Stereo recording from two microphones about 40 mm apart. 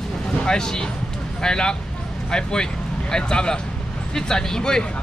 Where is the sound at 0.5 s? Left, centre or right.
Centre.